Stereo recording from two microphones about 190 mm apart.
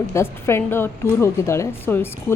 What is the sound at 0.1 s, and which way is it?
A woman's voice, 15° left (ahead or behind).